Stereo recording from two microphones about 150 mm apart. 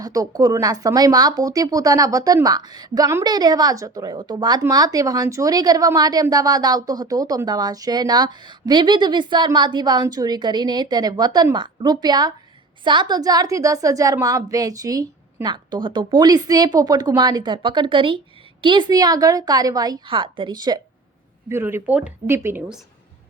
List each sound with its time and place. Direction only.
0.0 s a woman's voice: 25° right (ahead or behind)
21.5 s speech: 15° right (ahead or behind)